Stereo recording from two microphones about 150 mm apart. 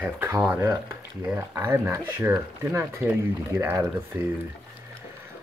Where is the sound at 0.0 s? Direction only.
15° right (ahead or behind).